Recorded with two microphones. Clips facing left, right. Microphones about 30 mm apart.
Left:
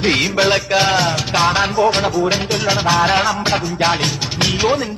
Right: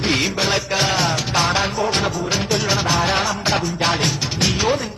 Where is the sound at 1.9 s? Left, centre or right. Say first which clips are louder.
Left 5 dB; left.